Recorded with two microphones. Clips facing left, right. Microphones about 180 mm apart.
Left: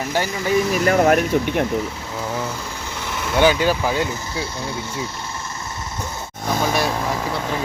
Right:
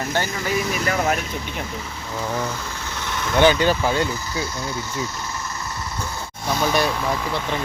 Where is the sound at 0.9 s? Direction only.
55° left (ahead or behind).